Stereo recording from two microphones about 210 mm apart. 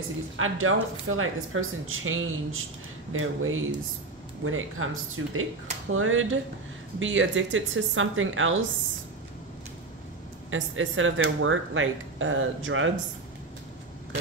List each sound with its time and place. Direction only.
0.4 s speech: 75° right (ahead or behind)
10.5 s speech: 70° right (ahead or behind)